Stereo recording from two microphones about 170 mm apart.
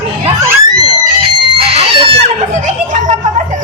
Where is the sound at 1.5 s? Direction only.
35° right (ahead or behind).